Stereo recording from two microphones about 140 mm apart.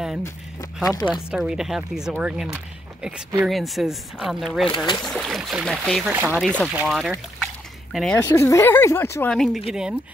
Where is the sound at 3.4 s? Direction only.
Centre (ahead or behind).